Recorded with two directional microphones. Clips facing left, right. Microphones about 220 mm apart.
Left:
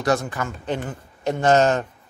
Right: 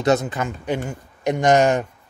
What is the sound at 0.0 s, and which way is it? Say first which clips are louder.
Speech: right 3 dB; 20° right (ahead or behind).